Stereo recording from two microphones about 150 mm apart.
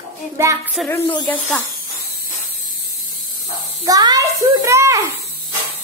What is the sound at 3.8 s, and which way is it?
A child's voice, 25° right (ahead or behind).